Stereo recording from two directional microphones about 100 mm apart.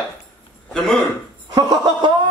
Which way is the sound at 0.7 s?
5° left (ahead or behind).